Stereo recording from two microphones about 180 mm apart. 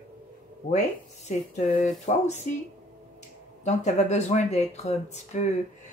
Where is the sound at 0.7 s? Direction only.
40° left (ahead or behind).